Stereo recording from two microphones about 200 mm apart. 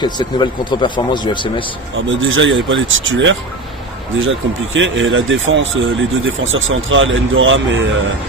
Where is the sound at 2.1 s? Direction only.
75° right (ahead or behind).